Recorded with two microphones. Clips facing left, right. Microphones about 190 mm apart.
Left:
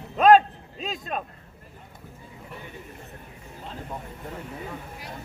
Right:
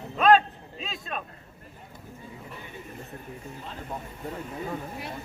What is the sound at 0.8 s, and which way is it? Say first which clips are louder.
Speech: left 4 dB; 40° left (ahead or behind).